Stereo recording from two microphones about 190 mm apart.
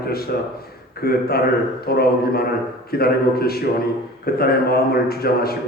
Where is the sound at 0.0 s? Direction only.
55° left (ahead or behind).